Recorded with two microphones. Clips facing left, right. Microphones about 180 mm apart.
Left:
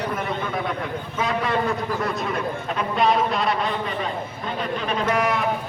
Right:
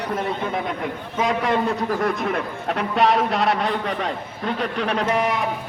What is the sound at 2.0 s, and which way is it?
A man's voice, 65° right (ahead or behind).